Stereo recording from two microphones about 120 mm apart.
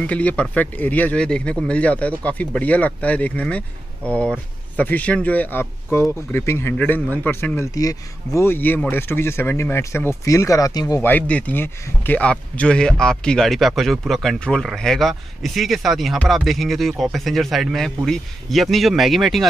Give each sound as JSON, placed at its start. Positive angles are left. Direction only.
{"t": 0.0, "sound": "speech", "side_deg": 10}
{"t": 4.0, "sound": "speech", "side_deg": -20}
{"t": 4.3, "sound": "speech", "side_deg": 15}
{"t": 11.0, "sound": "speech", "side_deg": 15}